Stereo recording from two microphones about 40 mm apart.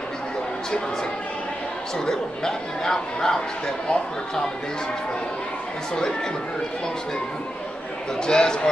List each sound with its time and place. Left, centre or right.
2.0 s speech: centre
8.2 s a man's voice: centre